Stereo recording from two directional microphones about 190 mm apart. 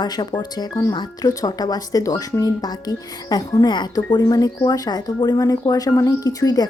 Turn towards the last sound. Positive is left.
turn(degrees=20)  # may be behind; listen again after turning